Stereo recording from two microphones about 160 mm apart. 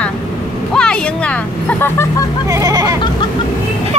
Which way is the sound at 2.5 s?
20° right (ahead or behind).